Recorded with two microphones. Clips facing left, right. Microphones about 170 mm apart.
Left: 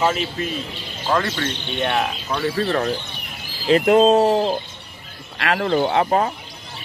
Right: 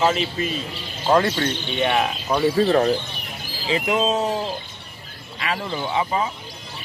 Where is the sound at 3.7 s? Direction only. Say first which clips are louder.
Left 8 dB; 60° left (ahead or behind).